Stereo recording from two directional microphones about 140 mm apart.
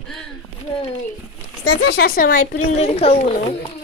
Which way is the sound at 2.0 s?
85° left.